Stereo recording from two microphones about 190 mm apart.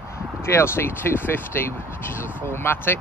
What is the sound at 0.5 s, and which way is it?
Speech, 15° left (ahead or behind).